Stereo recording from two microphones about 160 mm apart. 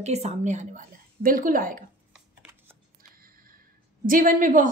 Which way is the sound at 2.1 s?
10° right (ahead or behind).